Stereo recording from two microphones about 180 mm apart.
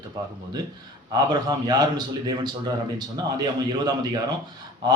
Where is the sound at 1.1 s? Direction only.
25° right (ahead or behind).